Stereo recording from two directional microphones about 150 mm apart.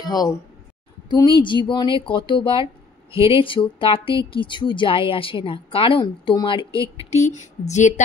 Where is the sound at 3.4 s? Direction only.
35° left (ahead or behind).